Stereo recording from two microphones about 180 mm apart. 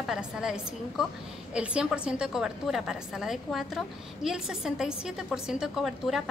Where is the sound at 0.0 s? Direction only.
5° right (ahead or behind).